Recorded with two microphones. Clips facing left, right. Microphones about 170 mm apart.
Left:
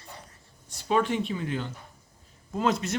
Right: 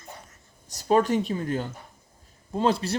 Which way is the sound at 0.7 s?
40° right (ahead or behind).